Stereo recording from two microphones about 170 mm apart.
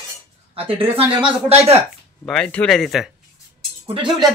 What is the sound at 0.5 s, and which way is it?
Speech, 35° right (ahead or behind).